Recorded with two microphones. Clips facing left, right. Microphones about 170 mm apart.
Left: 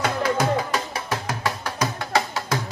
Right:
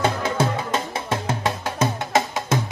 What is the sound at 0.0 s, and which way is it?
Music, 25° right (ahead or behind).